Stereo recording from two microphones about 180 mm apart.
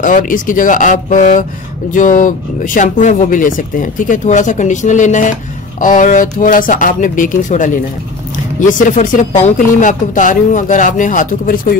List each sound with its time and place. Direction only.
0.0 s speech: 45° left (ahead or behind)